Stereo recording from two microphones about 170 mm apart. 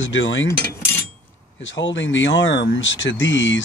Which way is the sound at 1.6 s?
90° left.